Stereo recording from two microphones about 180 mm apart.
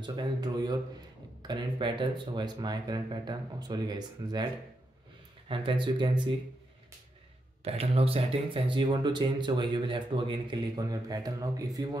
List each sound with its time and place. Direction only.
0.0 s speech: 25° right (ahead or behind)
5.5 s speech: 30° right (ahead or behind)
7.6 s speech: 35° right (ahead or behind)